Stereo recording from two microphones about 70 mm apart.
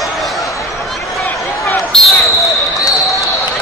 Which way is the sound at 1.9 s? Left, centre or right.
Centre.